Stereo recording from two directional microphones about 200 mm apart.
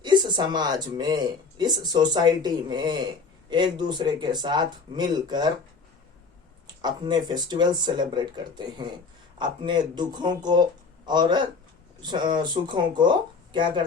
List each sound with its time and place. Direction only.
0.0 s speech: 20° right (ahead or behind)
6.8 s speech: 20° right (ahead or behind)